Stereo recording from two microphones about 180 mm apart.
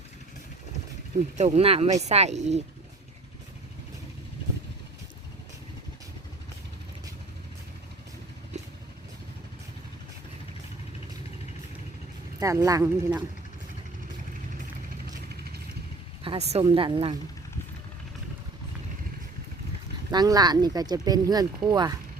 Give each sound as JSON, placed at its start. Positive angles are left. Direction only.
{"t": 1.4, "sound": "speech", "side_deg": -35}
{"t": 8.5, "sound": "vehicle", "side_deg": -40}
{"t": 12.4, "sound": "speech", "side_deg": -20}
{"t": 16.2, "sound": "speech", "side_deg": -30}
{"t": 20.1, "sound": "speech", "side_deg": -20}